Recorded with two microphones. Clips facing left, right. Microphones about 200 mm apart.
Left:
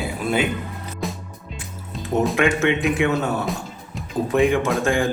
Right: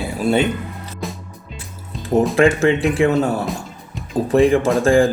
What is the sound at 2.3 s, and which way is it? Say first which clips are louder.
Speech: right 6 dB; 35° right (ahead or behind).